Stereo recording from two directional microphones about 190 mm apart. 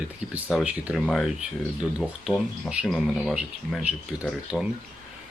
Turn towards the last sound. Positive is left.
turn(degrees=-5)  # may be behind; listen again after turning